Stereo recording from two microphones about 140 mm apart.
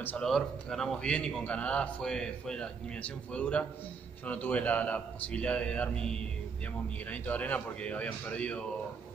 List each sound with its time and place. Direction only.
0.0 s a man's voice: 5° left (ahead or behind)